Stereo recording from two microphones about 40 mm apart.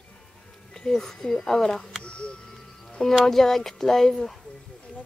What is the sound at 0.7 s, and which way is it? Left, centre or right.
Speech, centre.